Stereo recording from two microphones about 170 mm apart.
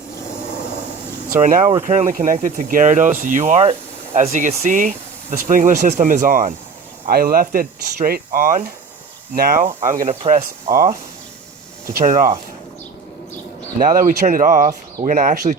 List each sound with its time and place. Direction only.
1.3 s speech: 55° right (ahead or behind)
11.9 s speech: 50° right (ahead or behind)
13.7 s speech: 55° right (ahead or behind)